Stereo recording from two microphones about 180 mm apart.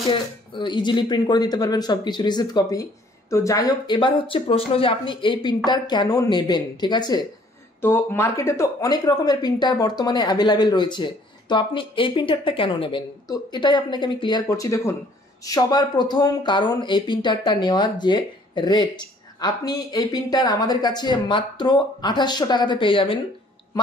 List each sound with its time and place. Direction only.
0.0 s speech: 30° left (ahead or behind)
7.8 s speech: 10° left (ahead or behind); by 23.1 s 30° left (ahead or behind)